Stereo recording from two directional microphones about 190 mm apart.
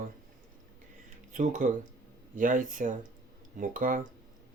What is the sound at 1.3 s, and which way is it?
Speech, 45° right (ahead or behind).